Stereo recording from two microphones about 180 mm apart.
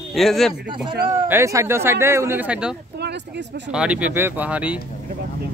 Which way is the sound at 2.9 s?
65° right (ahead or behind).